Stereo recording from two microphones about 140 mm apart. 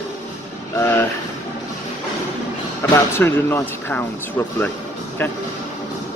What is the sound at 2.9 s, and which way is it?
Speech, 15° left (ahead or behind).